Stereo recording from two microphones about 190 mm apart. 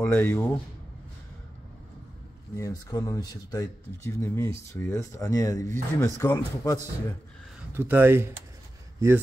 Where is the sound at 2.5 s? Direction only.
20° left (ahead or behind).